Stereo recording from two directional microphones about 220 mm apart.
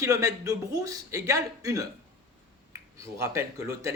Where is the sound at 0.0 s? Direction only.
15° right (ahead or behind).